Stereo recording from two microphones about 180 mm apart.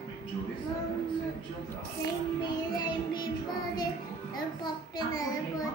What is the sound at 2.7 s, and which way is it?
Child singing, 25° left (ahead or behind).